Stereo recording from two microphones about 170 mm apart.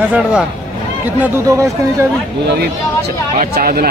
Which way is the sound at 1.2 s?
15° right (ahead or behind).